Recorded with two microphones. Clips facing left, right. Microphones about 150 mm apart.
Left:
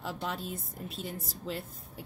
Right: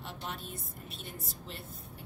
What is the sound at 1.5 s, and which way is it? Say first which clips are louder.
Speech: left 11 dB; 90° left.